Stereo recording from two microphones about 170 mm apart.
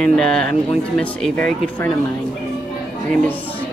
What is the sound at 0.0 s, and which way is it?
Speech, 5° left (ahead or behind).